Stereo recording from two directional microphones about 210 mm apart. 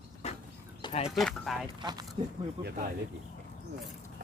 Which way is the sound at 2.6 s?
50° right (ahead or behind).